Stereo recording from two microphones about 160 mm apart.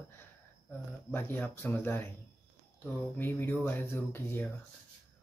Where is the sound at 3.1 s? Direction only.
15° left (ahead or behind).